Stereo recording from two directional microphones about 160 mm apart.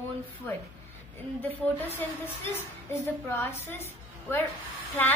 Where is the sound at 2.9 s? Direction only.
15° left (ahead or behind).